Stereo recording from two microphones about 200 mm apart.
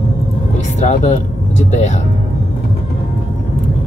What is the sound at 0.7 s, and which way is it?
Speech, 35° left (ahead or behind).